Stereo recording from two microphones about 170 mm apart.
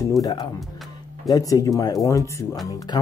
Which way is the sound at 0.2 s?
20° left (ahead or behind).